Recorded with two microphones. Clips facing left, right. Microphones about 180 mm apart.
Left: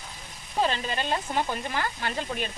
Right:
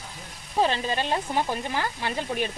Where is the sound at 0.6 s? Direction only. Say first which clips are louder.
Right 3 dB; 15° right (ahead or behind).